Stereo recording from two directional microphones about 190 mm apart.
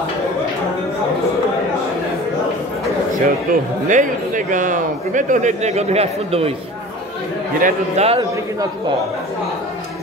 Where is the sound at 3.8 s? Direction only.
40° right (ahead or behind).